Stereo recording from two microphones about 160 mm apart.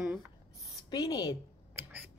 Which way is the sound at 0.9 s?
25° left (ahead or behind).